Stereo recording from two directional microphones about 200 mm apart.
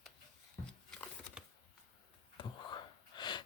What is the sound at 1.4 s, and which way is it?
Typing, 5° right (ahead or behind).